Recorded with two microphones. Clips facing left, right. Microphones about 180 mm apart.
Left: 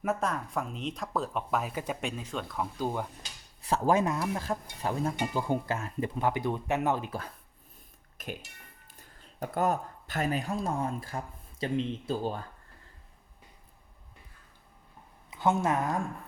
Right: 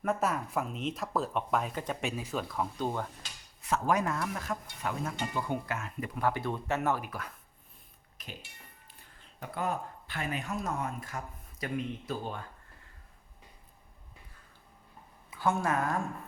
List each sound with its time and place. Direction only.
0.2 s speech: 5° right (ahead or behind)
2.0 s speech: 5° right (ahead or behind); by 3.1 s 10° left (ahead or behind)
3.6 s stir: 30° left (ahead or behind)
4.0 s speech: 20° left (ahead or behind)
4.4 s stir: 30° left (ahead or behind)
5.5 s speech: 30° left (ahead or behind)
8.2 s speech: 50° left (ahead or behind); by 12.4 s 30° left (ahead or behind)
15.3 s a woman's voice: 20° left (ahead or behind)